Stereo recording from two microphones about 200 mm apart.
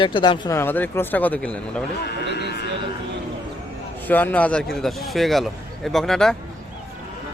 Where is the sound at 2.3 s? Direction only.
55° left (ahead or behind).